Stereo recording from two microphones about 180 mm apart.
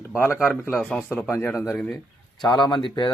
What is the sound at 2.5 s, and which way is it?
Speech, 25° left (ahead or behind).